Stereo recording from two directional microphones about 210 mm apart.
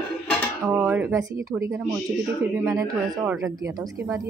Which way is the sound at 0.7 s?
10° right (ahead or behind).